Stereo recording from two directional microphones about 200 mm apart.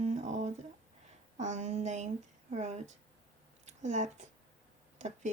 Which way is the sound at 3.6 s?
35° right (ahead or behind).